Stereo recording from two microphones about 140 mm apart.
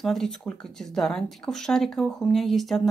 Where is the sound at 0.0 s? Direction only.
5° left (ahead or behind).